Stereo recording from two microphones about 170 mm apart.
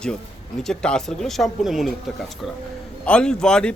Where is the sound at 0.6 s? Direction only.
5° left (ahead or behind).